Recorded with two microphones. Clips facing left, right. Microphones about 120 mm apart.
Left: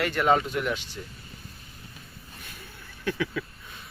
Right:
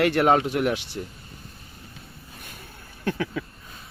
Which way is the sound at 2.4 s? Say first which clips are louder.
Right 1 dB; 50° right (ahead or behind).